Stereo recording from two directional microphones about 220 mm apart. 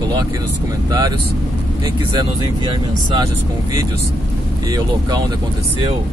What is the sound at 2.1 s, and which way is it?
Speech, 20° right (ahead or behind).